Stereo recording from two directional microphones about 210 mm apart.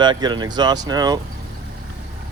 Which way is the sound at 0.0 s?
20° right (ahead or behind).